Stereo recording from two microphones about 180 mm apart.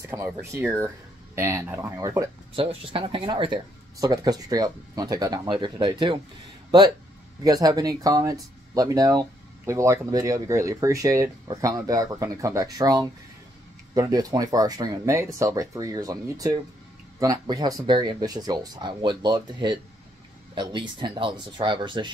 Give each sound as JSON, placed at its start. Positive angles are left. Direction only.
{"t": 0.1, "sound": "speech", "side_deg": -15}
{"t": 2.5, "sound": "speech", "side_deg": -30}
{"t": 7.4, "sound": "speech", "side_deg": -20}